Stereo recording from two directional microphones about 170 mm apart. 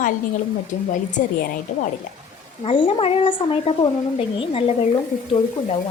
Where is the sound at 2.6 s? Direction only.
35° left (ahead or behind).